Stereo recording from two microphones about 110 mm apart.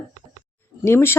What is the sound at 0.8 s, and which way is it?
Speech, 20° left (ahead or behind).